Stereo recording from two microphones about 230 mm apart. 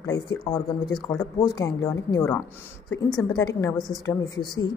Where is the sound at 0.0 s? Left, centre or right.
Centre.